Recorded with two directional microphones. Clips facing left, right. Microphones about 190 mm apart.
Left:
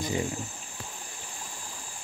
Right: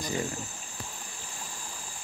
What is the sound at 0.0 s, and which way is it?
Speech, 15° left (ahead or behind).